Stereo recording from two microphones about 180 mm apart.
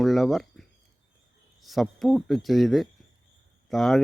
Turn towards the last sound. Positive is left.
turn(degrees=0)  # may be behind; listen again after turning